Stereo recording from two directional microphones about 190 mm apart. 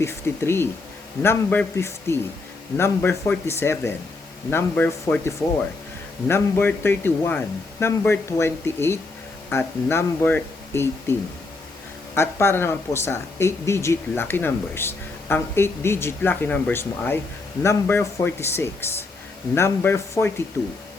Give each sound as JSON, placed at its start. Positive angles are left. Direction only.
{"t": 0.0, "sound": "speech", "side_deg": 15}